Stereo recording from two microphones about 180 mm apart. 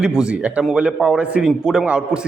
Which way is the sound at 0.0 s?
5° right (ahead or behind).